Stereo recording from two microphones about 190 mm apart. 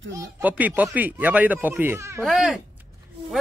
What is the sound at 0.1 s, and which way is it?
A man's voice, 10° right (ahead or behind).